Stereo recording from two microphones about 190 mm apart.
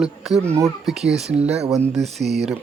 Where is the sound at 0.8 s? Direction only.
Centre (ahead or behind).